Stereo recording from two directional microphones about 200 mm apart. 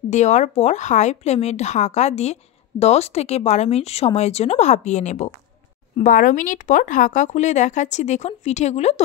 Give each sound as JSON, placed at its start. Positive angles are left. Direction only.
{"t": 0.1, "sound": "speech", "side_deg": 35}